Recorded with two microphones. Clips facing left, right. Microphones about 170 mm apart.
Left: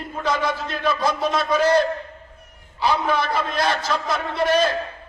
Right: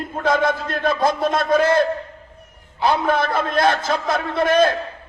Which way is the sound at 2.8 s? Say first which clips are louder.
Right 3 dB; 50° right (ahead or behind).